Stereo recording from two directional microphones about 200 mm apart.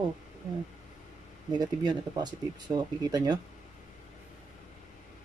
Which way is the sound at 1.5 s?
20° right (ahead or behind).